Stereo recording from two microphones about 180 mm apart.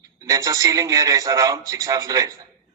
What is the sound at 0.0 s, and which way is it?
A man's voice, 20° right (ahead or behind).